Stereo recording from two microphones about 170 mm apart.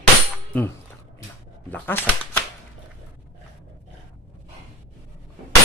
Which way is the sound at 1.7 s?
10° left (ahead or behind).